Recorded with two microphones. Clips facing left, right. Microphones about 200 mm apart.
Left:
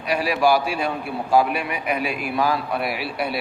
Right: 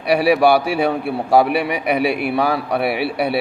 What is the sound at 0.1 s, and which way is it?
A man's voice, 70° right (ahead or behind).